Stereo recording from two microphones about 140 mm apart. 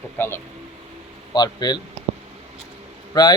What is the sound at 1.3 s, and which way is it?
Speech, 30° left (ahead or behind).